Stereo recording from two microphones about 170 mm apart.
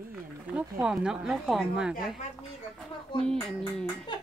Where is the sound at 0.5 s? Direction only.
5° right (ahead or behind).